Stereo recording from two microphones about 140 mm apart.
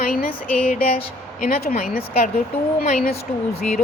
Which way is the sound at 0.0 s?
90° left.